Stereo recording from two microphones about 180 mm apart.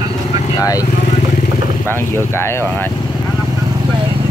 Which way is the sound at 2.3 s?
15° left (ahead or behind).